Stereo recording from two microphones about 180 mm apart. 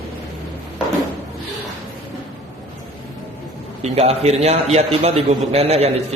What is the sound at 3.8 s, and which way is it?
A man's voice, 35° right (ahead or behind).